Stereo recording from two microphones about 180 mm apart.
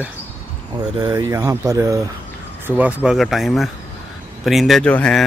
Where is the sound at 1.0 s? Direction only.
20° right (ahead or behind).